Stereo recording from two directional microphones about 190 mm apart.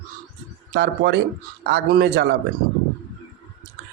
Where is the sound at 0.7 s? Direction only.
60° right (ahead or behind).